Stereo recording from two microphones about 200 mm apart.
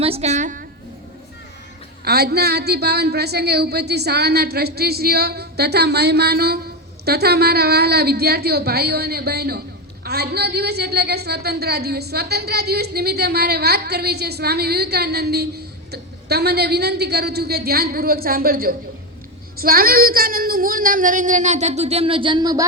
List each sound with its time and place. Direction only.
0.0 s speech: 30° right (ahead or behind)
2.0 s a woman's voice: 50° right (ahead or behind); by 22.6 s 20° right (ahead or behind)